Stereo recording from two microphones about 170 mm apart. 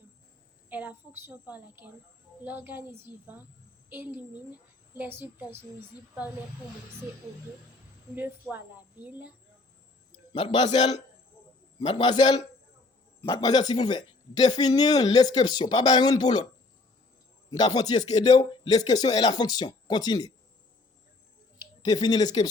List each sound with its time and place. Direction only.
0.7 s a woman's voice: 10° right (ahead or behind)
8.1 s a woman's voice: 10° right (ahead or behind)
10.3 s speech: 30° left (ahead or behind)
11.8 s speech: 25° left (ahead or behind)
17.5 s speech: 25° left (ahead or behind)
21.8 s speech: 25° left (ahead or behind)